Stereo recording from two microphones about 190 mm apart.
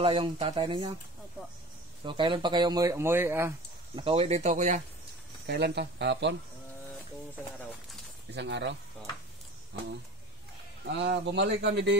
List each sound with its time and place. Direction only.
0.0 s speech: 25° right (ahead or behind)
2.0 s speech: 25° right (ahead or behind)
3.9 s speech: 30° right (ahead or behind)
5.5 s speech: 60° right (ahead or behind)
8.3 s speech: 65° right (ahead or behind)
9.7 s speech: 70° right (ahead or behind)